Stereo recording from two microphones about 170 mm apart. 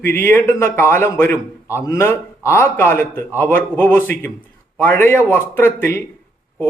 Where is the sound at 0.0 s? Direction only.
15° left (ahead or behind).